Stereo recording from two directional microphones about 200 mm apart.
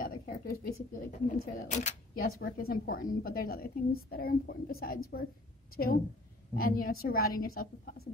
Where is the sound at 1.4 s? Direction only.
35° left (ahead or behind).